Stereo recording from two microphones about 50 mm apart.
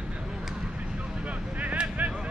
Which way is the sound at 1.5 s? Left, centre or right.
Right.